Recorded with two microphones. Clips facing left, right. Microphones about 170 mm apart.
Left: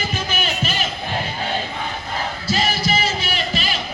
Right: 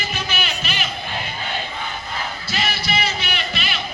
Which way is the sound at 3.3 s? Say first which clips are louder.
Left 3 dB; 35° left (ahead or behind).